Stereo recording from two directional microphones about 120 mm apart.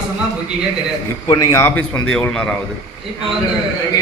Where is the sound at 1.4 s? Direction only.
25° left (ahead or behind).